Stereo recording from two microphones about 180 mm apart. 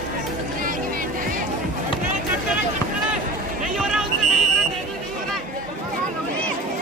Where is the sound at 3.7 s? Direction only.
Centre (ahead or behind).